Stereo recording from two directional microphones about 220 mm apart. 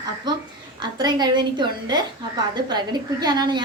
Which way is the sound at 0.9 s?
20° right (ahead or behind).